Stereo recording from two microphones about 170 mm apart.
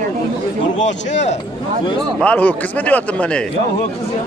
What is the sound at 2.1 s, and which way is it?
A man's voice, 10° left (ahead or behind).